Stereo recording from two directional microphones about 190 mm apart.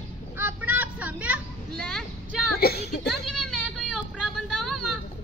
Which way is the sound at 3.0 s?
Centre (ahead or behind).